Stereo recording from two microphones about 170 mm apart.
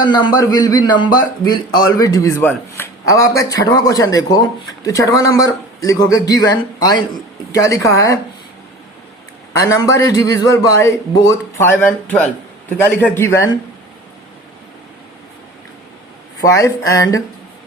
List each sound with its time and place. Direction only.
0.0 s a man's voice: 25° left (ahead or behind)
9.6 s a man's voice: 15° left (ahead or behind)
16.4 s a man's voice: 20° left (ahead or behind)